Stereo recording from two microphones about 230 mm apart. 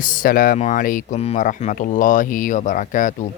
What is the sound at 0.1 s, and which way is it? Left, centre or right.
Speech, left.